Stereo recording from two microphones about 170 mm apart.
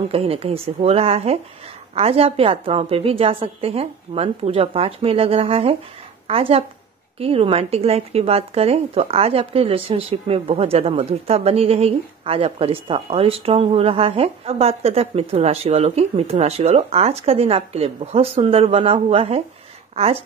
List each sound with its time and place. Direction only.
0.1 s speech: 35° right (ahead or behind)